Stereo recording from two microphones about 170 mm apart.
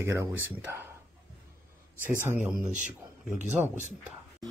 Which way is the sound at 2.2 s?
15° right (ahead or behind).